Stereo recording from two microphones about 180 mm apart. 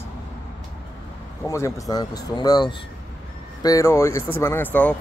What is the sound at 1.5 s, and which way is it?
Speech, 15° left (ahead or behind).